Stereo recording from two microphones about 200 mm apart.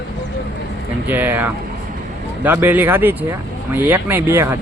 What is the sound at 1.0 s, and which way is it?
Speech, 10° right (ahead or behind).